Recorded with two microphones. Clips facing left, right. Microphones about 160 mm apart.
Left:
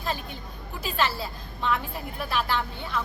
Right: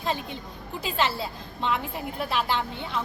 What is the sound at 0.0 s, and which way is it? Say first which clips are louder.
A woman's voice: right 2 dB; 20° right (ahead or behind).